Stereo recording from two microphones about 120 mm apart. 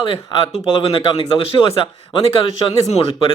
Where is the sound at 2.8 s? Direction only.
60° left (ahead or behind).